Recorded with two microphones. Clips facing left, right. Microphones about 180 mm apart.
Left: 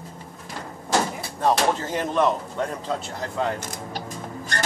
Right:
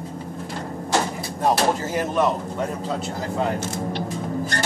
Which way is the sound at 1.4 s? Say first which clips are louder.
Right 1 dB; 10° right (ahead or behind).